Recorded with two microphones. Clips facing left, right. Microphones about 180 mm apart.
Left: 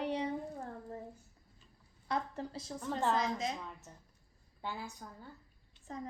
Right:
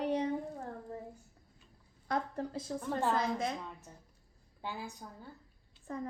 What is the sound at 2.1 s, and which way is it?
A woman's voice, 50° right (ahead or behind).